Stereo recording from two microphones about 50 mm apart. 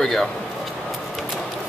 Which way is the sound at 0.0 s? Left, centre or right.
Centre.